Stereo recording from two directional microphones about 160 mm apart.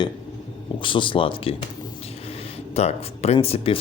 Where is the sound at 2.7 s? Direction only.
40° left (ahead or behind).